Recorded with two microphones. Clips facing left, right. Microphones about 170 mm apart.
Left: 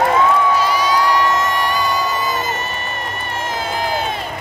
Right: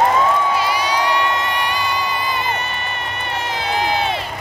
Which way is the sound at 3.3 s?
45° left (ahead or behind).